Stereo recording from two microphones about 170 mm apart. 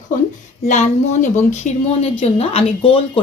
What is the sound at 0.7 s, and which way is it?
Speech, 45° left (ahead or behind).